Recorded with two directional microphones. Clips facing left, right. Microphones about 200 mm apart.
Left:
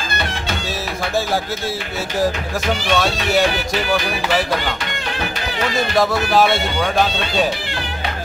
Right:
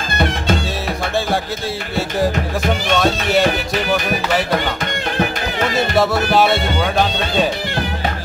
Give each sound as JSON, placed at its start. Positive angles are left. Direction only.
{"t": 2.7, "sound": "speech", "side_deg": 0}
{"t": 5.9, "sound": "speech", "side_deg": 0}